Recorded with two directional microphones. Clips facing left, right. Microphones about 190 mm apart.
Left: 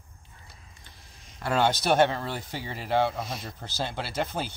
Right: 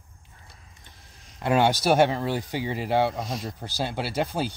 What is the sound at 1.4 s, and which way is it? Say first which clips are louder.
A man's voice: right 3 dB; 15° right (ahead or behind).